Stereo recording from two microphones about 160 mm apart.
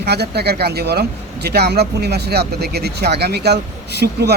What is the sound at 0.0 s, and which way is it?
Speech, 90° right.